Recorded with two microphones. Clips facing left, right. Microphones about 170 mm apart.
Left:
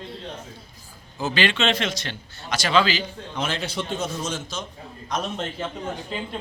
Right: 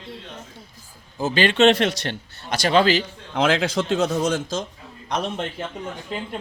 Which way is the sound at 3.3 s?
90° right.